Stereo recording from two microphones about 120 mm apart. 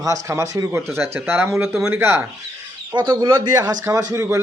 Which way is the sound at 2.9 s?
40° right (ahead or behind).